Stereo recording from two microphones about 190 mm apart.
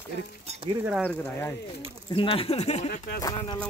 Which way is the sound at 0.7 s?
30° right (ahead or behind).